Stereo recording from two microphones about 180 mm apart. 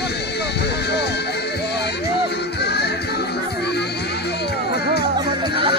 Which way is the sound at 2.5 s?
65° left (ahead or behind).